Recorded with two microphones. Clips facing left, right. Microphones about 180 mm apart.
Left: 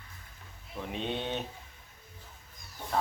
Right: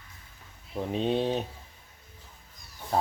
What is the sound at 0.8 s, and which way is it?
Speech, 35° right (ahead or behind).